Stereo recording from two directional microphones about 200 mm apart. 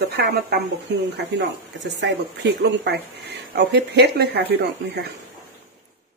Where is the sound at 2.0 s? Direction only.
60° right (ahead or behind).